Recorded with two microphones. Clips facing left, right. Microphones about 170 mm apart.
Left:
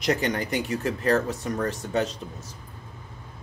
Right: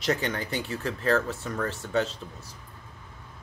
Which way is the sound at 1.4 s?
40° left (ahead or behind).